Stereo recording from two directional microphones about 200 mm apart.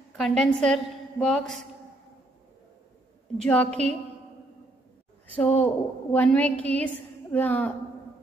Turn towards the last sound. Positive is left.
turn(degrees=10)  # may be behind; listen again after turning